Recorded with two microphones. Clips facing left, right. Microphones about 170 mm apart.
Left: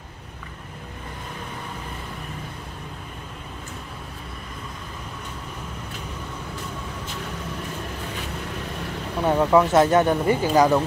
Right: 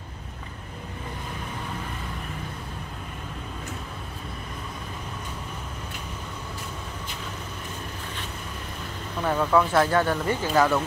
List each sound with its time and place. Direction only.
9.2 s speech: 20° left (ahead or behind)